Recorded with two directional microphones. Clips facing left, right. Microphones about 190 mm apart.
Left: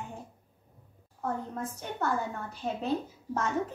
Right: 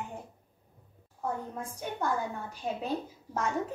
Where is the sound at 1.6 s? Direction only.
10° right (ahead or behind).